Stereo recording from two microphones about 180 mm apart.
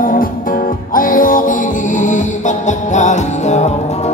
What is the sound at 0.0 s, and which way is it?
Music, 50° left (ahead or behind).